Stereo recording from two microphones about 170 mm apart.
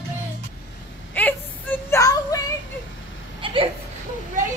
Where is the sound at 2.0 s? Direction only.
20° left (ahead or behind).